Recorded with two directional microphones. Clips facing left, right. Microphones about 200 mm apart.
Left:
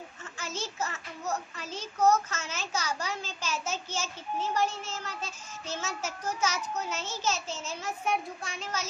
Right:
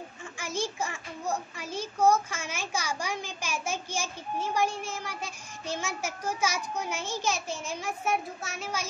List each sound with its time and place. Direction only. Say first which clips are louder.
0.4 s a child's voice: right 3 dB; 10° right (ahead or behind)